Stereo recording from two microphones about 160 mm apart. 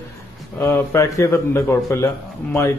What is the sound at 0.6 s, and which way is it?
A man's voice, 15° left (ahead or behind).